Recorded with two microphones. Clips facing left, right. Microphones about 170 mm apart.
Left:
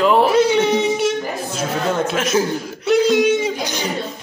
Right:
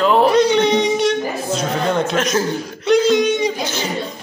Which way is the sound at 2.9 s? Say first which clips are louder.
Even; 5° left (ahead or behind).